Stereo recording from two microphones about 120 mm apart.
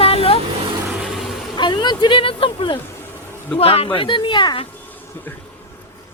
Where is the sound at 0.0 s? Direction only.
55° left (ahead or behind).